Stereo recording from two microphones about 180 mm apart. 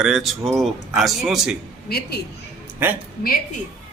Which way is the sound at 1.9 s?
60° left (ahead or behind).